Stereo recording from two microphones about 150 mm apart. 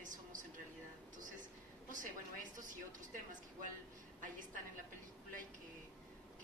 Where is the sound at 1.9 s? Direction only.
60° right (ahead or behind).